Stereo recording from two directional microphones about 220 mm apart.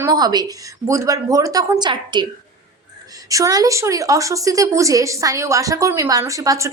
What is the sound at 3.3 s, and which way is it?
A woman's voice, 15° right (ahead or behind).